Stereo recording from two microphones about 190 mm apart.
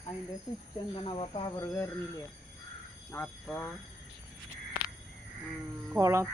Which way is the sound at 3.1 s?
10° left (ahead or behind).